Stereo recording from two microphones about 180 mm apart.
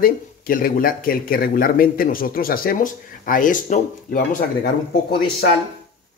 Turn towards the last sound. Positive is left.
turn(degrees=60)  # may be behind; listen again after turning